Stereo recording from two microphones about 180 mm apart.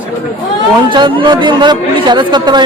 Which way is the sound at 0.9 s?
25° right (ahead or behind).